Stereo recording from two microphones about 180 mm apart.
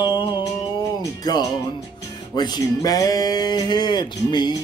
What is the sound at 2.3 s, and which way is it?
Speech, 25° left (ahead or behind).